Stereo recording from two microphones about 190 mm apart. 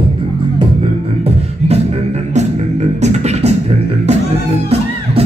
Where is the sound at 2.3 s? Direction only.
35° right (ahead or behind).